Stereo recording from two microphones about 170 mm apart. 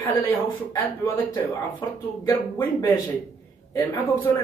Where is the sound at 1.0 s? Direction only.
10° left (ahead or behind).